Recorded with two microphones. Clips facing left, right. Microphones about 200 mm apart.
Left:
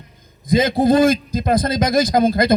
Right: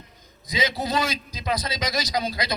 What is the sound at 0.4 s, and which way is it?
A man's voice, 50° left (ahead or behind).